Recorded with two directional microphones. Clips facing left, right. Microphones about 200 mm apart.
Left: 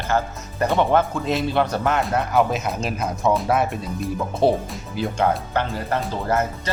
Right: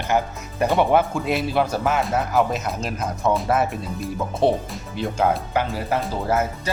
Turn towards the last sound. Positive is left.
turn(degrees=-5)  # may be behind; listen again after turning